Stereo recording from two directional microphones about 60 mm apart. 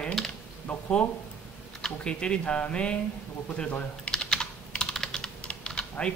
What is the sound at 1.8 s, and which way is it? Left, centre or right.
A man's voice, centre.